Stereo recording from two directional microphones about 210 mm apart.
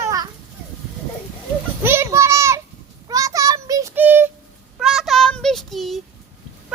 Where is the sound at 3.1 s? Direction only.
15° right (ahead or behind); by 6.0 s centre (ahead or behind).